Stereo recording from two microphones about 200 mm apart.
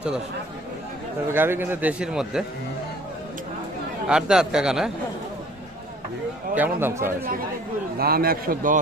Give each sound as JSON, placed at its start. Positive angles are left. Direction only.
{"t": 1.3, "sound": "a man's voice", "side_deg": -10}
{"t": 4.1, "sound": "speech", "side_deg": -5}
{"t": 6.5, "sound": "a man's voice", "side_deg": -10}
{"t": 7.9, "sound": "a man's voice", "side_deg": -50}